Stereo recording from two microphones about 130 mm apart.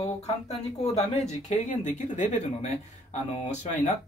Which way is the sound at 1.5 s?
70° left (ahead or behind).